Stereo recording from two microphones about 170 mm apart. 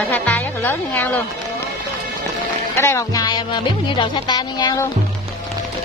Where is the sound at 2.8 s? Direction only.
15° left (ahead or behind).